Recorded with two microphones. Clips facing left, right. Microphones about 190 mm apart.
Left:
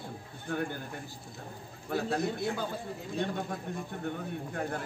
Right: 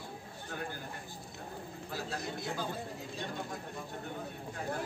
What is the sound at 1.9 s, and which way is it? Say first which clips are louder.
A man's voice: left 9 dB; 60° left (ahead or behind).